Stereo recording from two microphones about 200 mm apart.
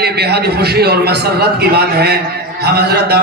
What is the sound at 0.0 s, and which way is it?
A man's voice, 55° right (ahead or behind).